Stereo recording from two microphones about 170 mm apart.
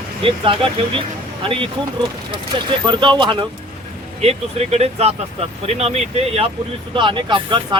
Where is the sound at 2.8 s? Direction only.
25° right (ahead or behind).